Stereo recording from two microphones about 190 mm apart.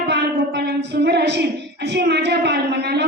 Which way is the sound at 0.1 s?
65° right (ahead or behind).